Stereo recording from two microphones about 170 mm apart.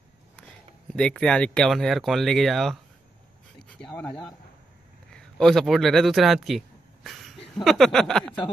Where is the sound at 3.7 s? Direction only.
5° left (ahead or behind).